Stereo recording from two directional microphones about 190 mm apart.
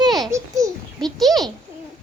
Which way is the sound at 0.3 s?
15° right (ahead or behind).